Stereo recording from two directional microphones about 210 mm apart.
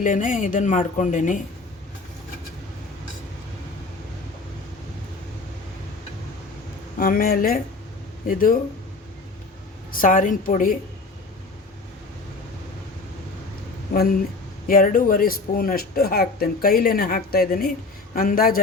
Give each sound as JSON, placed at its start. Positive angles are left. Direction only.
{"t": 0.0, "sound": "speech", "side_deg": 40}
{"t": 7.0, "sound": "speech", "side_deg": 45}
{"t": 9.9, "sound": "speech", "side_deg": 40}
{"t": 14.7, "sound": "speech", "side_deg": 40}